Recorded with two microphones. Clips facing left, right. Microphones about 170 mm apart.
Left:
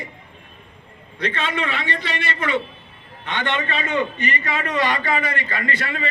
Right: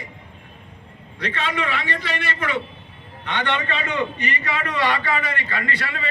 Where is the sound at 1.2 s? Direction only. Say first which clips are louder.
Left 1 dB; 25° left (ahead or behind).